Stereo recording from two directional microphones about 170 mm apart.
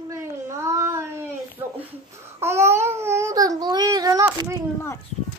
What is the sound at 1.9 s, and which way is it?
Babbling, 15° right (ahead or behind).